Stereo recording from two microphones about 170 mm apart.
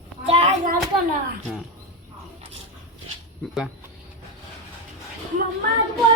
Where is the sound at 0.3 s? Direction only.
40° right (ahead or behind).